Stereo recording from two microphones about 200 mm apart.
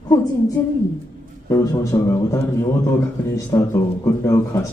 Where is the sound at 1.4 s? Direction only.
15° left (ahead or behind).